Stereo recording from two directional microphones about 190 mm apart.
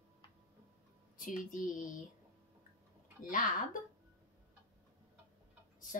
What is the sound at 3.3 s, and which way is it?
Speech, 45° left (ahead or behind).